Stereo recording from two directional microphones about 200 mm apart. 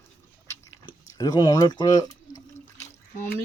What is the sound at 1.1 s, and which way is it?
Drip, 20° left (ahead or behind).